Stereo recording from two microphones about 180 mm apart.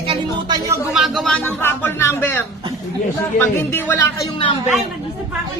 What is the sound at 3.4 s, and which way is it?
Speech, 15° left (ahead or behind).